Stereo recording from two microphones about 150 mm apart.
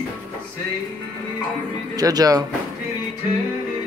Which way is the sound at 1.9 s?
25° right (ahead or behind).